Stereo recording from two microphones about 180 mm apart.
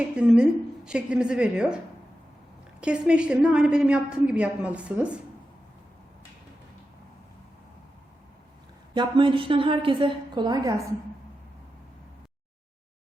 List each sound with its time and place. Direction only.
0.2 s a woman's voice: 5° right (ahead or behind)
2.8 s a woman's voice: 5° right (ahead or behind)
9.0 s a woman's voice: 25° right (ahead or behind)